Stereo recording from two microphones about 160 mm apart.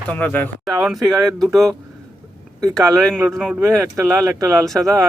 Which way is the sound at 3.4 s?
10° right (ahead or behind).